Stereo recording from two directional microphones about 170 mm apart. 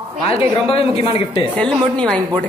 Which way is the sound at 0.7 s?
35° left (ahead or behind).